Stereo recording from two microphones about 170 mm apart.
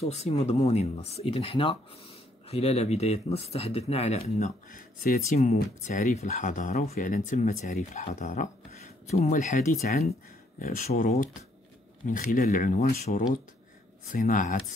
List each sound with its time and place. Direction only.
0.0 s speech: 40° left (ahead or behind); by 5.2 s 55° left (ahead or behind)
5.3 s speech: 45° left (ahead or behind)